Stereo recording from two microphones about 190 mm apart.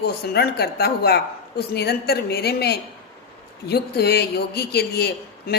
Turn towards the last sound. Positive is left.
turn(degrees=55)  # may be behind; listen again after turning